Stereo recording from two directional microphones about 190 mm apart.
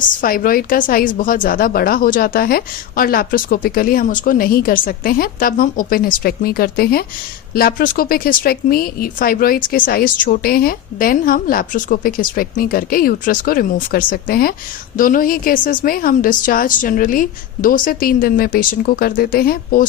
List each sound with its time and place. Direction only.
0.2 s speech: 50° left (ahead or behind)